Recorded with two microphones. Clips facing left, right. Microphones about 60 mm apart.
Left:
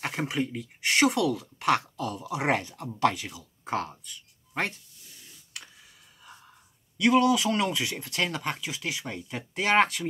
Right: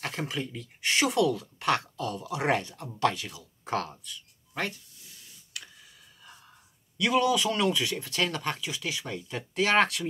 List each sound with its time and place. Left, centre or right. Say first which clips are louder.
0.0 s speech: left 4 dB; centre
0.7 s speech: left 1 dB; centre
2.0 s speech: left 1 dB; centre
3.6 s speech: even; centre
7.0 s speech: left 3 dB; centre
7.3 s speech: even; centre